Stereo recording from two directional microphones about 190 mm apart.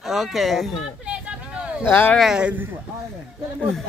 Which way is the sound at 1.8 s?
10° left (ahead or behind).